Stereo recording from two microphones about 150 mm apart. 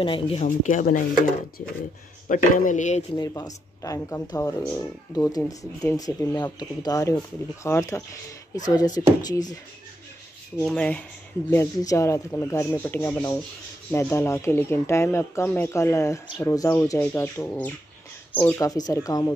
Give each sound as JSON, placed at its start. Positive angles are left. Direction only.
{"t": 0.0, "sound": "speech", "side_deg": 35}
{"t": 0.5, "sound": "speech", "side_deg": 60}
{"t": 2.2, "sound": "speech", "side_deg": 60}
{"t": 3.2, "sound": "speech", "side_deg": 25}
{"t": 10.6, "sound": "speech", "side_deg": 5}
{"t": 11.5, "sound": "speech", "side_deg": 20}
{"t": 18.6, "sound": "speech", "side_deg": 25}